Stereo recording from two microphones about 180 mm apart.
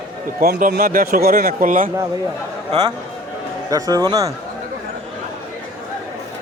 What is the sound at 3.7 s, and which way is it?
Speech, 20° right (ahead or behind).